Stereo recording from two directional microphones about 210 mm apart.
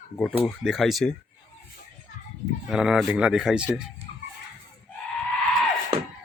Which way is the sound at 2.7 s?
5° right (ahead or behind).